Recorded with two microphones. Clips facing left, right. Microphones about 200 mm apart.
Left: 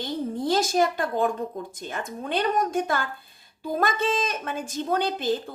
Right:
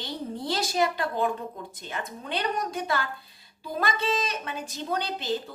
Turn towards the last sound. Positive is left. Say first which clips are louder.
# left 5 dB
turn(degrees=50)  # may be behind; listen again after turning